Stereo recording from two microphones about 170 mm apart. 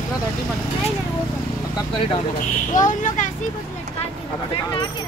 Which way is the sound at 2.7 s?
50° left (ahead or behind).